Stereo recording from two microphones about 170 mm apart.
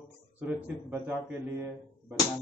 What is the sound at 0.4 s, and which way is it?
Speech, 10° right (ahead or behind).